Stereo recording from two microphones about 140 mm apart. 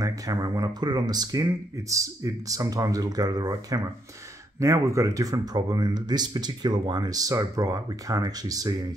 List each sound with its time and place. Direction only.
0.0 s speech: 25° right (ahead or behind)